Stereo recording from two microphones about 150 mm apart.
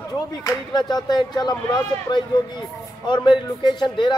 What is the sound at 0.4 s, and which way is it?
A man's voice, 25° left (ahead or behind).